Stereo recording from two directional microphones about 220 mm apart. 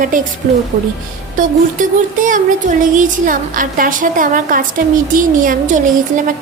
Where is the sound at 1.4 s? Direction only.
35° right (ahead or behind).